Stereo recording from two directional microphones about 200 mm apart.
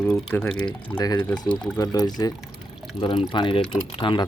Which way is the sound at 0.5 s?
20° left (ahead or behind).